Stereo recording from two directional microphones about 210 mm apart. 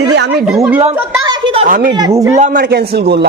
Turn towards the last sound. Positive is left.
turn(degrees=-50)  # may be behind; listen again after turning